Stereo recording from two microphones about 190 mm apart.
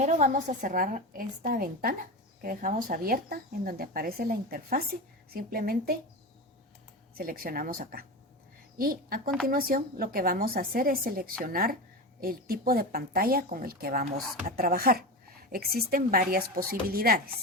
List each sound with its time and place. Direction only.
0.0 s speech: 40° right (ahead or behind)
7.1 s speech: 50° right (ahead or behind)